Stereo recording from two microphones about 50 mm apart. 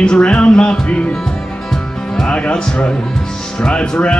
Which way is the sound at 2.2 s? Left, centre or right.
Left.